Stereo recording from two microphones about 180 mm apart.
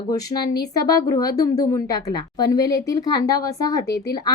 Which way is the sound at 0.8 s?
20° left (ahead or behind).